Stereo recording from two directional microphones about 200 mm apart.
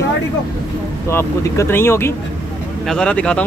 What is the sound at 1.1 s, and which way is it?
Speech, 15° left (ahead or behind).